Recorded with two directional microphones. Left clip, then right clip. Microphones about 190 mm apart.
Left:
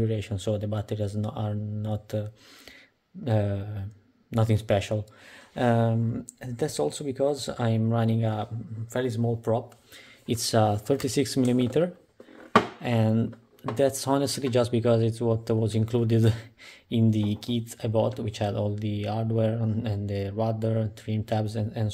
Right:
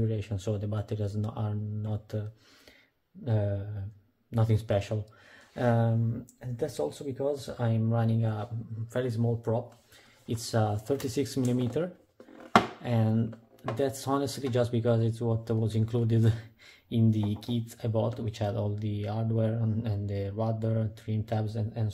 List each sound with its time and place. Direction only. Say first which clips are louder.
0.0 s speech: left 5 dB; 25° left (ahead or behind)
6.4 s speech: left 4 dB; 50° left (ahead or behind)
8.9 s speech: left 3 dB; 25° left (ahead or behind)